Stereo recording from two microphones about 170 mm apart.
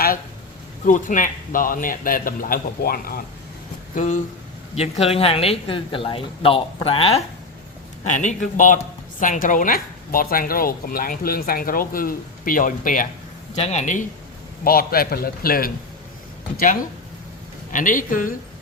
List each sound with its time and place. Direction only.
0.9 s a man's voice: 50° left (ahead or behind)
3.9 s a man's voice: 45° left (ahead or behind)
4.7 s speech: 35° left (ahead or behind)
8.0 s a man's voice: 45° left (ahead or behind)
14.6 s speech: 60° left (ahead or behind)
17.7 s a man's voice: 50° left (ahead or behind)